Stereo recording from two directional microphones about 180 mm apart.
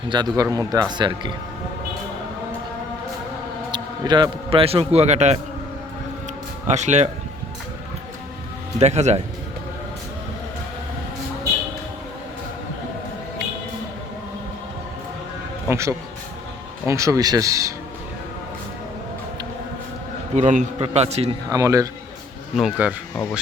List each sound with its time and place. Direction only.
0.1 s speech: 25° right (ahead or behind)
3.7 s a man's voice: 25° right (ahead or behind)
6.7 s a man's voice: 40° right (ahead or behind)
8.8 s a man's voice: 40° right (ahead or behind)
15.7 s speech: 15° right (ahead or behind)
20.3 s a man's voice: 40° right (ahead or behind)
21.5 s speech: 20° right (ahead or behind)
22.5 s speech: 5° right (ahead or behind)